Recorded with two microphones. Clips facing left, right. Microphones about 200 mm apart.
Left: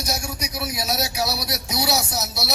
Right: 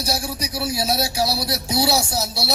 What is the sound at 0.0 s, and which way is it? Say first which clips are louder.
Music: right 3 dB; 30° right (ahead or behind).